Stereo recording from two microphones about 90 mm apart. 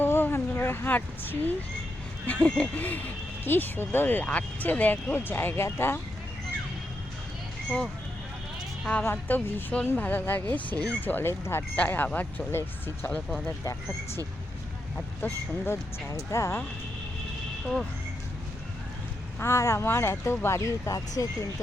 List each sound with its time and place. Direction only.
0.0 s a sound: 25° left (ahead or behind)
2.2 s speech: 15° left (ahead or behind)
9.0 s speech: 25° left (ahead or behind)
14.9 s speech: 25° left (ahead or behind)
19.4 s speech: 30° left (ahead or behind)